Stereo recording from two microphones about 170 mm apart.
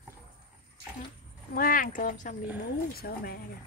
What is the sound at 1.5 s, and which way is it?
Speech, 55° left (ahead or behind).